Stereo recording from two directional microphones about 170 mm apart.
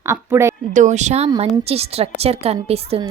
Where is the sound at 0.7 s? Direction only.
45° right (ahead or behind).